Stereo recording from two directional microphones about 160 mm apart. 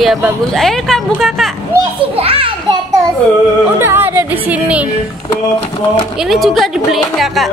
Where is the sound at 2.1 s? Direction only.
35° right (ahead or behind).